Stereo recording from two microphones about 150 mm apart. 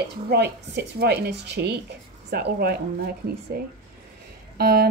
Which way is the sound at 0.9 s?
90° right.